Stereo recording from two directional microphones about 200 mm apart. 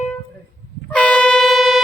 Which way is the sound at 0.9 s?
5° left (ahead or behind).